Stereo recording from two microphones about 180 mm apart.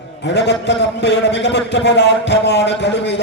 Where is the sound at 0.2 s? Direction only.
75° left (ahead or behind).